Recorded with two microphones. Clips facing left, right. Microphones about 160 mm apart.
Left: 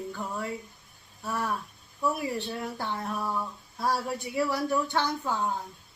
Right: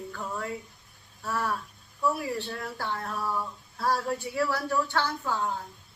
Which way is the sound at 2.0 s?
15° left (ahead or behind).